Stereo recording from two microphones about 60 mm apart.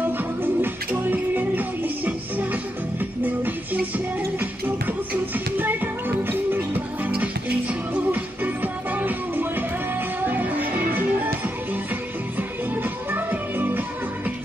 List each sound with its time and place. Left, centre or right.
0.2 s music: right
7.2 s music: right
12.4 s music: right